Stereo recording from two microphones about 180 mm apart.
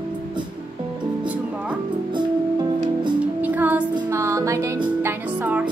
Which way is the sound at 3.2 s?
10° right (ahead or behind).